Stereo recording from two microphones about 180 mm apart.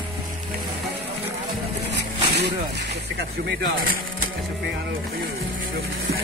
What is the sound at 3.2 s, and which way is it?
Speech, 60° right (ahead or behind).